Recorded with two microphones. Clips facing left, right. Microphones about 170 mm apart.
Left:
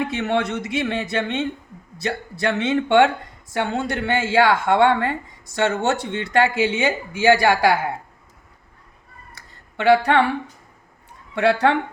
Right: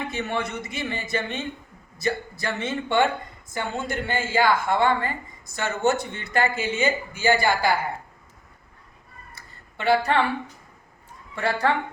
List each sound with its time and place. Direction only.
0.0 s a woman's voice: 75° left (ahead or behind)
9.3 s a sound: 75° left (ahead or behind)
11.3 s a woman's voice: 70° left (ahead or behind)